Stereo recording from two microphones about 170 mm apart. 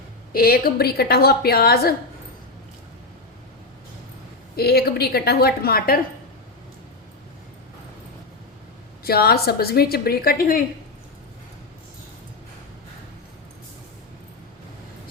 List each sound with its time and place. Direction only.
0.3 s a woman's voice: 60° left (ahead or behind)
4.5 s a woman's voice: 65° left (ahead or behind)
9.0 s a woman's voice: 65° left (ahead or behind)